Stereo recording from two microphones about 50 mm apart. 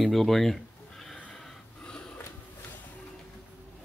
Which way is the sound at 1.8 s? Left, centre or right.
Centre.